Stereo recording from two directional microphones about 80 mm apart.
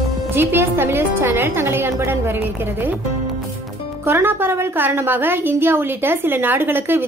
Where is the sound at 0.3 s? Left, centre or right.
Right.